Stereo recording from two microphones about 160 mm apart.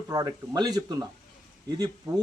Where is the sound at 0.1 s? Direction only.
25° right (ahead or behind).